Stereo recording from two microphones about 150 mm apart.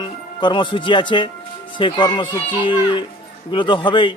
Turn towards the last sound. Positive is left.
turn(degrees=30)  # may be behind; listen again after turning